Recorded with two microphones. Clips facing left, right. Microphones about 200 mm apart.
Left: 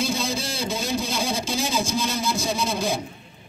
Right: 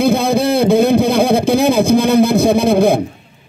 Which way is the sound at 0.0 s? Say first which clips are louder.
Right 13 dB; 60° right (ahead or behind).